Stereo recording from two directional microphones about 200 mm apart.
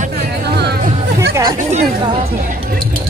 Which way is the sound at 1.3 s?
20° right (ahead or behind).